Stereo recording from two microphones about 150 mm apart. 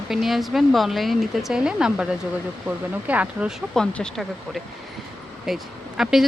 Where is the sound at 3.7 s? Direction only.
5° left (ahead or behind).